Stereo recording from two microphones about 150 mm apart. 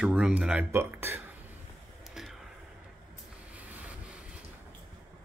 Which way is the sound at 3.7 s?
10° right (ahead or behind).